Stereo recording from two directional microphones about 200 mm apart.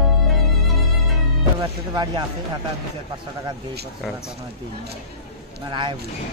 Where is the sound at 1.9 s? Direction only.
20° right (ahead or behind).